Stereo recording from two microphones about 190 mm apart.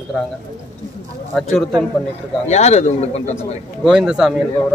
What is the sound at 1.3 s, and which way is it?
Speech, 5° left (ahead or behind).